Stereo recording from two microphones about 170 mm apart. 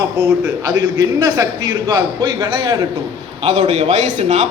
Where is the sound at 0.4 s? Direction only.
20° right (ahead or behind).